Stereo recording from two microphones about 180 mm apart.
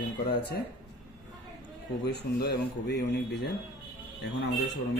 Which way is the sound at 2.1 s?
65° left (ahead or behind).